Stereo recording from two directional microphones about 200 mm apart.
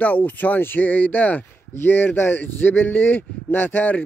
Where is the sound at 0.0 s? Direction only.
10° left (ahead or behind).